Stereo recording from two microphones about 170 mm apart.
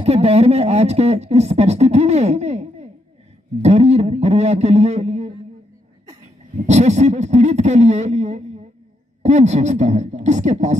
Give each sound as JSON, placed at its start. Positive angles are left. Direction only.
{"t": 0.0, "sound": "speech", "side_deg": -40}
{"t": 6.5, "sound": "speech", "side_deg": -45}